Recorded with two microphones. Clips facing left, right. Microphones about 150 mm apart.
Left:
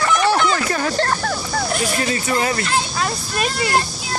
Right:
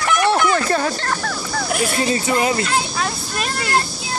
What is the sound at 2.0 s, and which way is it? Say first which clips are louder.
Baby cry: right 4 dB; 25° right (ahead or behind).